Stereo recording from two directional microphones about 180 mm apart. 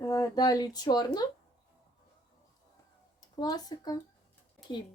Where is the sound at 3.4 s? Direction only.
20° left (ahead or behind).